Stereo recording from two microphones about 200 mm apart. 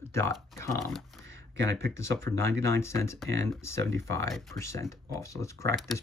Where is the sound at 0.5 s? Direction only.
15° left (ahead or behind).